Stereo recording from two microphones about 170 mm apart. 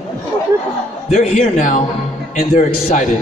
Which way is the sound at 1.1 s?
45° left (ahead or behind).